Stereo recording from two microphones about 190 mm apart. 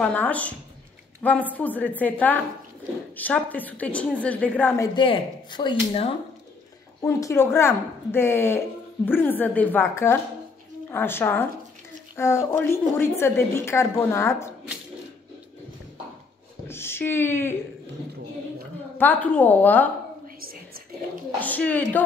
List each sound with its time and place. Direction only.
0.0 s speech: 5° left (ahead or behind)
4.9 s speech: 25° left (ahead or behind)
7.0 s speech: 15° left (ahead or behind)
16.6 s speech: 15° left (ahead or behind)
18.9 s speech: 10° left (ahead or behind)
20.3 s a sound: 50° right (ahead or behind)
21.4 s speech: 10° left (ahead or behind)